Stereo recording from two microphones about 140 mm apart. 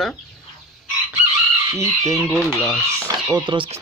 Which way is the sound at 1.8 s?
25° right (ahead or behind).